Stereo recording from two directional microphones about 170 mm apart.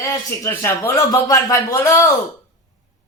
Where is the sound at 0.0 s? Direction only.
15° left (ahead or behind).